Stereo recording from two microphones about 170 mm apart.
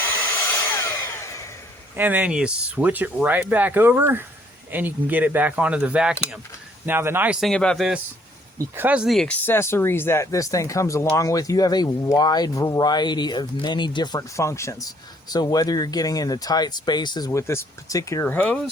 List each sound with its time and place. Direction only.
0.0 s hair dryer: 10° left (ahead or behind)
2.0 s speech: 10° right (ahead or behind)
8.5 s speech: 15° right (ahead or behind); by 18.7 s 5° left (ahead or behind)